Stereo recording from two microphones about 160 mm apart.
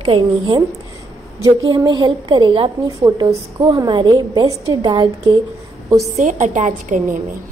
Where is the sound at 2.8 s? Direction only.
20° right (ahead or behind).